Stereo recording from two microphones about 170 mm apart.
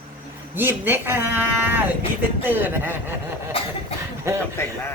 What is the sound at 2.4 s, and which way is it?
Speech, 10° right (ahead or behind).